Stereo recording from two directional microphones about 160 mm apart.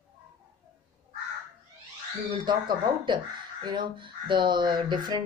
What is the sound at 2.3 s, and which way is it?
Speech, 30° right (ahead or behind).